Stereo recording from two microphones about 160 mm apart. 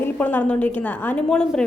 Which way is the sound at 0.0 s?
10° left (ahead or behind).